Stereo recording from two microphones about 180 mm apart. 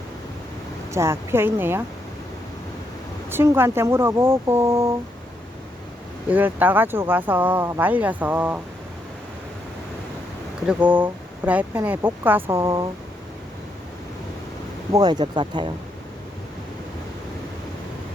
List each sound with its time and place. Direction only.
0.9 s speech: 15° right (ahead or behind)
3.2 s speech: 10° right (ahead or behind)
6.3 s speech: 10° right (ahead or behind)
10.7 s speech: 10° right (ahead or behind)
14.9 s speech: 20° right (ahead or behind)